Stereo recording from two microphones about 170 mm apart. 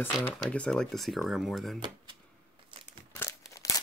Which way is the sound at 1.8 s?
25° right (ahead or behind).